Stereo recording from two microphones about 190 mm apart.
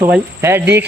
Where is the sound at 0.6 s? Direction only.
65° right (ahead or behind).